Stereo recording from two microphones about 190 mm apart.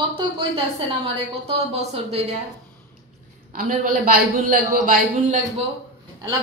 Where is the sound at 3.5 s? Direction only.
45° right (ahead or behind).